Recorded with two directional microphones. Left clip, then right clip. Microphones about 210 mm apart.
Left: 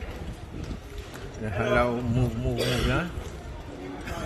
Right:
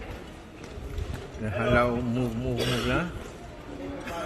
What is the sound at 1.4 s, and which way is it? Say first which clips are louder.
A man's voice: even; centre (ahead or behind).